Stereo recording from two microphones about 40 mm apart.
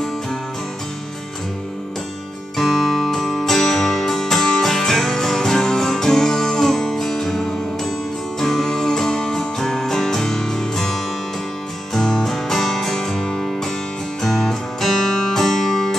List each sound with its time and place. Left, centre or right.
2.5 s music: centre